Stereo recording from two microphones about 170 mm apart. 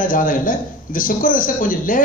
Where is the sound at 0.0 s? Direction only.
55° left (ahead or behind).